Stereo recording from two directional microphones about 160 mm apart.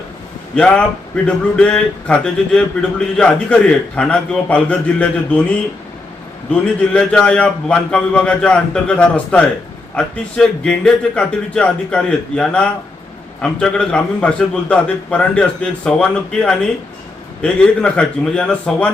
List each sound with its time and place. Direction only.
0.5 s a man's voice: 5° left (ahead or behind)